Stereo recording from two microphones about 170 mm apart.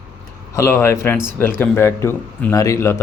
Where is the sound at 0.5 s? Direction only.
15° left (ahead or behind).